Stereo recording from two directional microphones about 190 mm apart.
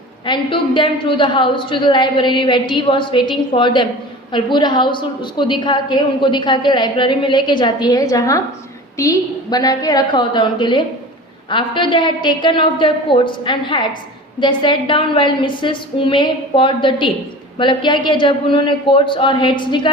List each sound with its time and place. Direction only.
0.3 s a woman's voice: 25° left (ahead or behind)